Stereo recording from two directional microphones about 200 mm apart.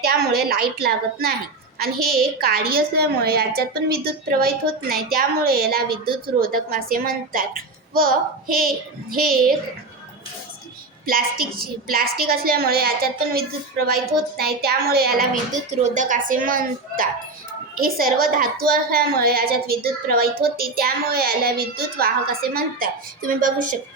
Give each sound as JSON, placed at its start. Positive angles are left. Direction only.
{"t": 0.0, "sound": "a woman's voice", "side_deg": -50}
{"t": 11.0, "sound": "a woman's voice", "side_deg": -45}